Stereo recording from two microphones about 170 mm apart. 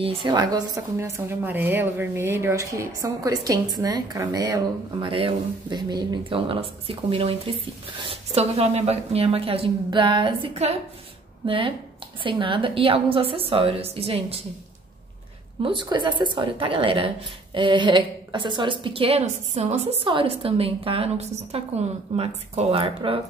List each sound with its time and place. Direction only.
0.0 s a woman's voice: 25° right (ahead or behind)
15.6 s a woman's voice: 30° right (ahead or behind)